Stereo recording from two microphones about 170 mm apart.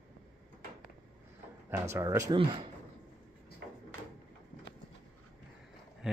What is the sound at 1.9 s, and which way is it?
Speech, 15° right (ahead or behind).